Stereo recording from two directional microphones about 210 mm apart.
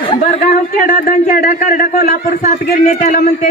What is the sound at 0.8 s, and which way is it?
A man's voice, 40° left (ahead or behind).